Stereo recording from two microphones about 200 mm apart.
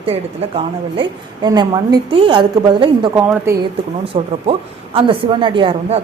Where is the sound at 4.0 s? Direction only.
30° right (ahead or behind).